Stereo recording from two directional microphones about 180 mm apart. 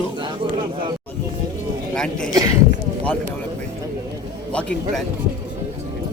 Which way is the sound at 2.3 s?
20° right (ahead or behind).